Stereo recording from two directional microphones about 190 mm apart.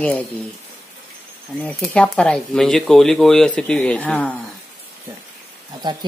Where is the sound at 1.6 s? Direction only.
5° left (ahead or behind).